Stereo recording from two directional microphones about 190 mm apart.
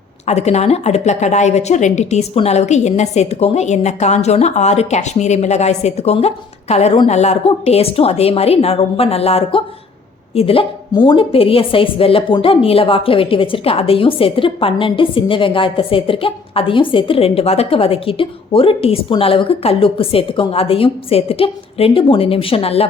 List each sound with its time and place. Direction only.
0.3 s a woman's voice: 35° left (ahead or behind)